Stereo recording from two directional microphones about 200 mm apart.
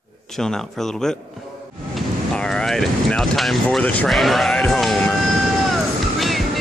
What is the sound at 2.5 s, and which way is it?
Speech, centre (ahead or behind).